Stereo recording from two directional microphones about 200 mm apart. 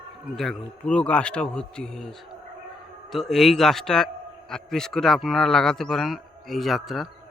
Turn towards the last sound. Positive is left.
turn(degrees=0)  # may be behind; listen again after turning